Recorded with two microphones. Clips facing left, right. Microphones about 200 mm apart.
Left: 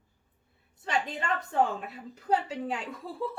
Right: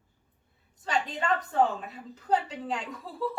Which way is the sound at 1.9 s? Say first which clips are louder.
Right 1 dB; 10° left (ahead or behind).